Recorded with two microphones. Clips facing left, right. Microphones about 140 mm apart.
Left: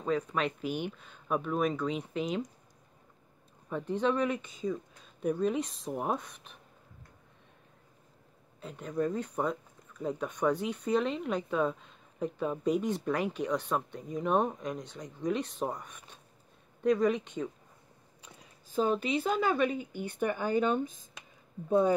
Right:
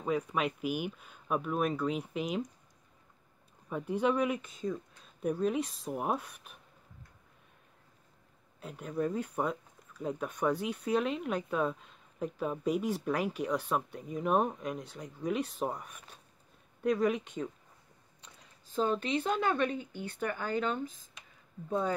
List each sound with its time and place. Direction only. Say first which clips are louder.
0.0 s speech: left 1 dB; 10° right (ahead or behind)
3.6 s speech: even; 10° right (ahead or behind)
8.5 s speech: left 2 dB; 5° right (ahead or behind)
18.2 s a woman's voice: left 3 dB; 10° left (ahead or behind)